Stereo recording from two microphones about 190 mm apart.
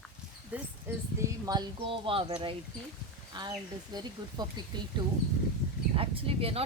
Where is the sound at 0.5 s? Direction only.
5° right (ahead or behind).